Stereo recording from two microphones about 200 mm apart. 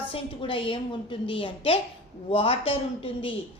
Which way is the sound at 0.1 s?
25° left (ahead or behind).